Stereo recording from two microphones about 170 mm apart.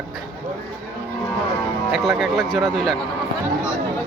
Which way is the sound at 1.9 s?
Centre (ahead or behind).